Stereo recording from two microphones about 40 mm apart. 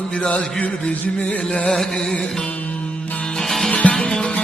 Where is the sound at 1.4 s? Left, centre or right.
Left.